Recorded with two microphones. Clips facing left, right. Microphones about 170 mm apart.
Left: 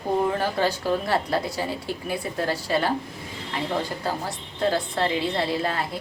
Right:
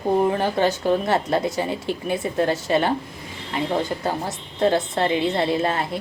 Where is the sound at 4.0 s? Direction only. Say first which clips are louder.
Right 3 dB; 20° right (ahead or behind).